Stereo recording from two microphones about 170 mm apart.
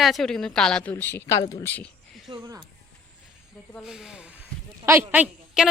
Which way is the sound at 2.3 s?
20° right (ahead or behind).